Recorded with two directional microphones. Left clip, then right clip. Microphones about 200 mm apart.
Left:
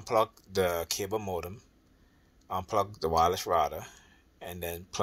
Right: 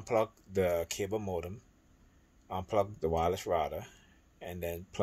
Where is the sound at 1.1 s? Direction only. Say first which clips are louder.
Left 3 dB; 10° right (ahead or behind).